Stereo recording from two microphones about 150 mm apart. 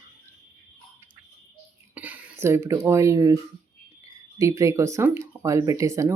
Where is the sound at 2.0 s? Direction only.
10° right (ahead or behind).